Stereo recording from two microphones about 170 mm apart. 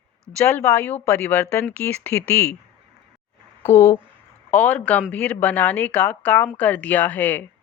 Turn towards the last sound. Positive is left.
turn(degrees=10)  # may be behind; listen again after turning